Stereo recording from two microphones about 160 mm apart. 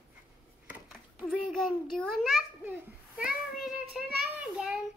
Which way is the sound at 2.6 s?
5° right (ahead or behind).